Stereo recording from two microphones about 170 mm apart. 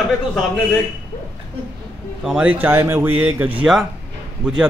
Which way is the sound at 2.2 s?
5° right (ahead or behind).